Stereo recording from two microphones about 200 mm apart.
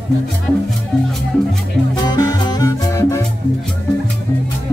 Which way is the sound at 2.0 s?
20° left (ahead or behind).